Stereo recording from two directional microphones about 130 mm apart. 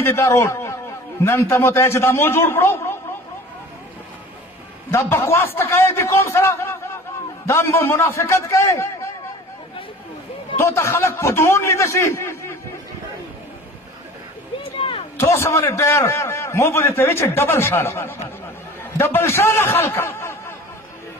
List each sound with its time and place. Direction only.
0.0 s a man's voice: 20° left (ahead or behind)
4.9 s a man's voice: 20° left (ahead or behind)
10.6 s a man's voice: 20° left (ahead or behind)
14.6 s a sound: 45° left (ahead or behind)
15.1 s a man's voice: 20° left (ahead or behind)